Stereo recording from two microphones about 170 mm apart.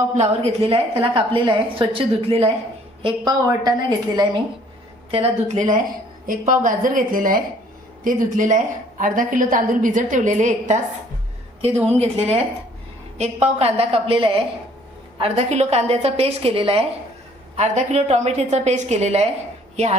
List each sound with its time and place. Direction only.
0.1 s a woman's voice: 40° right (ahead or behind)
6.2 s a woman's voice: 55° right (ahead or behind)
12.0 s a woman's voice: 40° right (ahead or behind)